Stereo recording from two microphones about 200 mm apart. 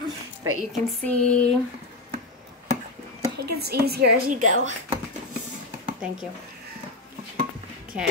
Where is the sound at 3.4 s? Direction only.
55° right (ahead or behind).